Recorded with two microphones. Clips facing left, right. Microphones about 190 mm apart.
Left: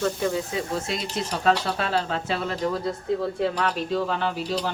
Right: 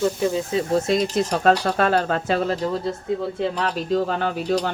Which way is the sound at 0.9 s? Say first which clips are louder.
Right 8 dB; 50° right (ahead or behind).